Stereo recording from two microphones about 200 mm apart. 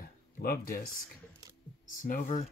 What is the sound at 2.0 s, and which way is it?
Speech, 40° left (ahead or behind).